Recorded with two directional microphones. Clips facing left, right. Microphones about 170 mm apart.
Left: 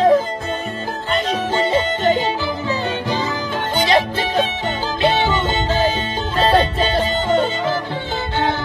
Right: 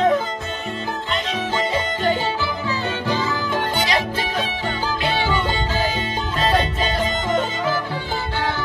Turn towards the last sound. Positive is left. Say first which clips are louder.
# left 4 dB
turn(degrees=30)  # may be behind; listen again after turning